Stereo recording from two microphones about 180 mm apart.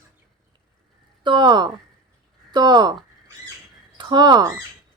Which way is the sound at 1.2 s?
25° right (ahead or behind).